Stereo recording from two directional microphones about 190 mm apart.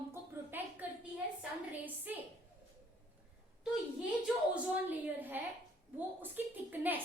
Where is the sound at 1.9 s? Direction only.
10° right (ahead or behind).